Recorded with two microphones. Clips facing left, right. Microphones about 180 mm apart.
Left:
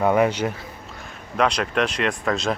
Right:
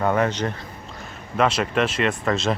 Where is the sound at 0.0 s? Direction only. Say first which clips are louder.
Left 2 dB; 10° left (ahead or behind).